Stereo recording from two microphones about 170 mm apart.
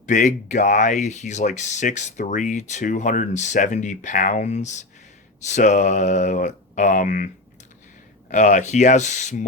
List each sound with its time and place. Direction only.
0.0 s speech: 45° left (ahead or behind)
8.3 s speech: 45° left (ahead or behind)